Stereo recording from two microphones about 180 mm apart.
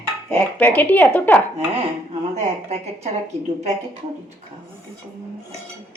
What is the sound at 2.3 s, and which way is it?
Speech, 35° right (ahead or behind).